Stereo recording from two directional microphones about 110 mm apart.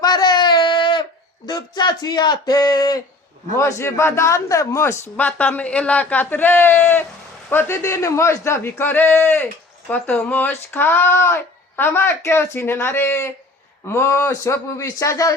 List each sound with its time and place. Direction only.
0.0 s a sound: 40° left (ahead or behind)
1.5 s speech: 40° left (ahead or behind)
3.6 s speech: 25° left (ahead or behind)
5.1 s speech: 15° left (ahead or behind)